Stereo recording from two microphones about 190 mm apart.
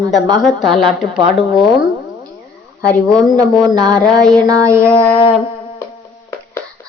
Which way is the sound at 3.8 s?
20° right (ahead or behind).